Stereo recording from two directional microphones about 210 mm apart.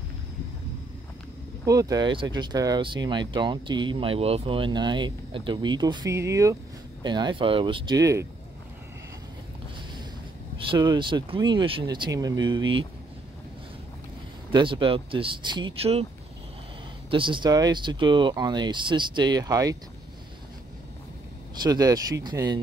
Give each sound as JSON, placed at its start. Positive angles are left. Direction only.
{"t": 1.7, "sound": "speech", "side_deg": -15}
{"t": 10.6, "sound": "speech", "side_deg": -20}
{"t": 14.5, "sound": "speech", "side_deg": -25}
{"t": 17.1, "sound": "speech", "side_deg": -25}
{"t": 21.6, "sound": "speech", "side_deg": -15}